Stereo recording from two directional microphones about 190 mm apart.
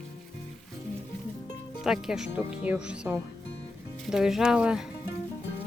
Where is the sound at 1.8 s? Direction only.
Centre (ahead or behind).